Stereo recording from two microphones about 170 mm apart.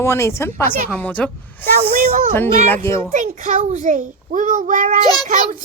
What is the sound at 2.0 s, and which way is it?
Speech, 45° right (ahead or behind).